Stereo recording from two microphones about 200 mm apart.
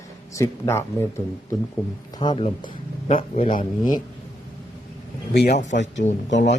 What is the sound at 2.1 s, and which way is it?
Speech, 25° left (ahead or behind).